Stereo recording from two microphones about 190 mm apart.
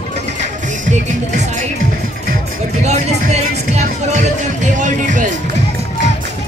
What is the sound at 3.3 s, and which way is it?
Music, 35° right (ahead or behind).